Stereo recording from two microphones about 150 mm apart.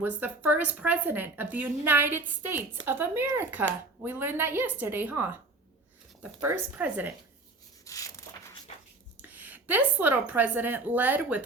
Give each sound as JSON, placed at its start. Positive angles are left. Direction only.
{"t": 0.0, "sound": "speech", "side_deg": -10}
{"t": 6.4, "sound": "speech", "side_deg": -10}
{"t": 7.9, "sound": "a sound", "side_deg": 20}
{"t": 9.3, "sound": "speech", "side_deg": -10}